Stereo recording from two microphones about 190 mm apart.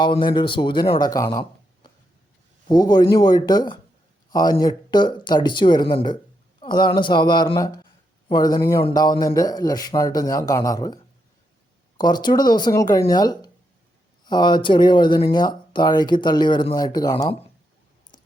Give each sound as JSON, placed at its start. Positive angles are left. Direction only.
{"t": 0.0, "sound": "speech", "side_deg": 25}